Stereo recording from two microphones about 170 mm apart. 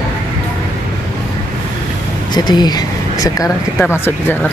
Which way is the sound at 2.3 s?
25° left (ahead or behind).